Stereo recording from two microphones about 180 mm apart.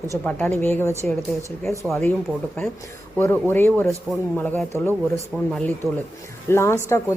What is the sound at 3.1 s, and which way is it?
Speech, 10° left (ahead or behind).